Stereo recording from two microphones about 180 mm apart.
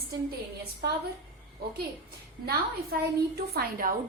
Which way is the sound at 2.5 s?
60° right (ahead or behind).